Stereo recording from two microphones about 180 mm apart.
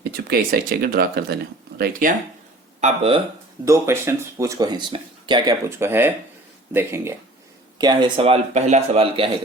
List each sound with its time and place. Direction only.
0.0 s speech: 60° right (ahead or behind)
2.8 s speech: 35° right (ahead or behind)
3.7 s speech: 15° right (ahead or behind)
7.8 s speech: 25° right (ahead or behind)